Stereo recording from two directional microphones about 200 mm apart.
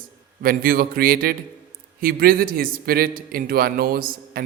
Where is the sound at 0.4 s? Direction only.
45° right (ahead or behind).